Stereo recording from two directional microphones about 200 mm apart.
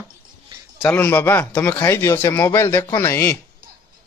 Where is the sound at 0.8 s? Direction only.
10° left (ahead or behind).